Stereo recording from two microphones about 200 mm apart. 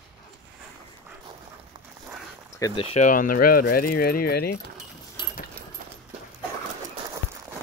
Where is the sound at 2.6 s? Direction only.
30° left (ahead or behind); by 4.6 s 50° left (ahead or behind).